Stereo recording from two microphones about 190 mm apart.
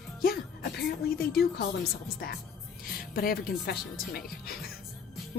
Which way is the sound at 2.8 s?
50° left (ahead or behind).